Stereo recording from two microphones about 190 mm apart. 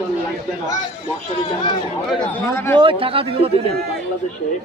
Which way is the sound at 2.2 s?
15° left (ahead or behind).